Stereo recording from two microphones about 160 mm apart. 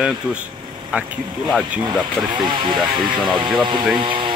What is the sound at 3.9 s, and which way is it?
Speech, 30° right (ahead or behind).